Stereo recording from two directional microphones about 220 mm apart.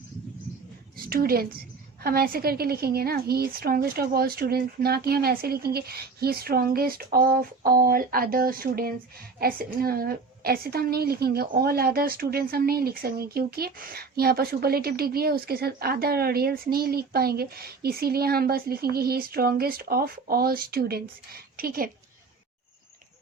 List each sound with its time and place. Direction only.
0.9 s a woman's voice: 45° right (ahead or behind)